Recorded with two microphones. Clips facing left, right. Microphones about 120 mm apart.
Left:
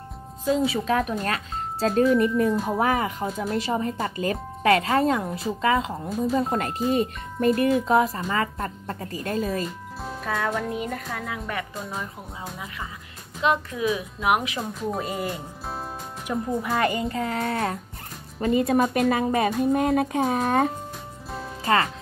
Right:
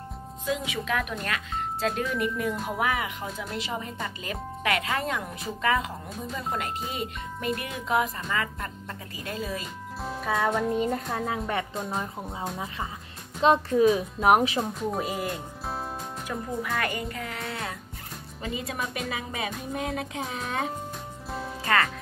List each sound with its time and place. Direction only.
0.5 s speech: 35° left (ahead or behind)
6.0 s speech: centre (ahead or behind)
6.3 s speech: 40° left (ahead or behind)
9.0 s speech: 45° left (ahead or behind)
10.0 s speech: centre (ahead or behind)
10.8 s speech: 30° right (ahead or behind)
13.4 s a child's voice: 35° right (ahead or behind)
14.6 s speech: centre (ahead or behind)
16.3 s speech: 20° left (ahead or behind); by 17.6 s 35° left (ahead or behind)
18.4 s speech: 55° left (ahead or behind)
21.6 s speech: 25° left (ahead or behind)